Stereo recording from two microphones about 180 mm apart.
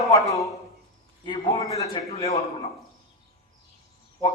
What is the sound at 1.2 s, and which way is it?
Speech, 30° left (ahead or behind).